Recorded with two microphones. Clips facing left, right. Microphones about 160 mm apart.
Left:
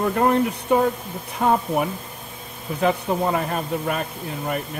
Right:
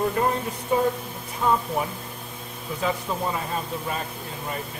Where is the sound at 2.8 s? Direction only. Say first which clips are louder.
Left 6 dB; 65° left (ahead or behind).